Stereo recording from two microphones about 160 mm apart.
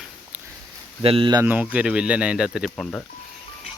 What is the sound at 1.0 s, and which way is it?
Speech, 35° right (ahead or behind).